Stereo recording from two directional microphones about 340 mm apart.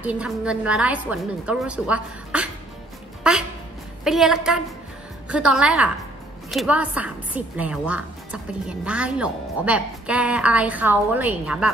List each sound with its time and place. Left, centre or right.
0.0 s a woman's voice: centre